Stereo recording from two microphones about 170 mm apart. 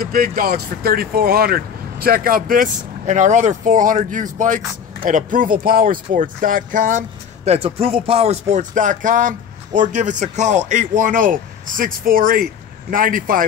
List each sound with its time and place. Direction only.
0.0 s speech: 60° right (ahead or behind)